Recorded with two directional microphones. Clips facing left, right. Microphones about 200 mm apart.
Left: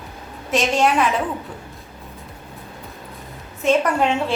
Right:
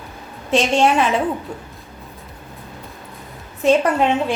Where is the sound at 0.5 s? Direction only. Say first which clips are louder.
Right 2 dB; 30° right (ahead or behind).